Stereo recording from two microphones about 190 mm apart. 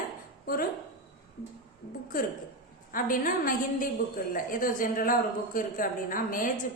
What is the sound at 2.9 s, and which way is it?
A woman's voice, 45° left (ahead or behind).